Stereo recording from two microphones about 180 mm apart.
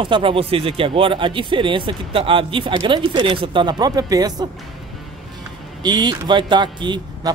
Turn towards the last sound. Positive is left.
turn(degrees=-25)  # may be behind; listen again after turning